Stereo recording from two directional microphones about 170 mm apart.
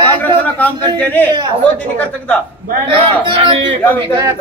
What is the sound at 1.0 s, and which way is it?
Speech, 10° left (ahead or behind).